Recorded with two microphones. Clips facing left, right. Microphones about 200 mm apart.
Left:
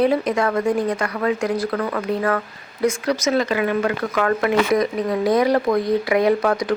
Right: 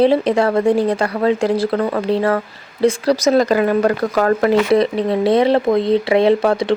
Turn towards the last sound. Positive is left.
turn(degrees=-30)  # may be behind; listen again after turning